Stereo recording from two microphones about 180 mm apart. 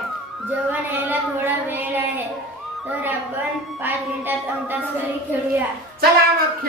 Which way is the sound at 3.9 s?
10° right (ahead or behind).